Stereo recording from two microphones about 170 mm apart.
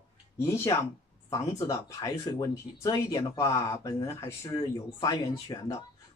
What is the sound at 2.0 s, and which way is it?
Speech, 20° left (ahead or behind).